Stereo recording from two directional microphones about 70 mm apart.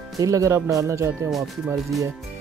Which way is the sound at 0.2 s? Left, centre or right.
Right.